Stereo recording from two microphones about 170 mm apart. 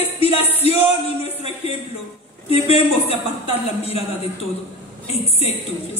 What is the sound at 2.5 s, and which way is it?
A man's voice, 35° left (ahead or behind).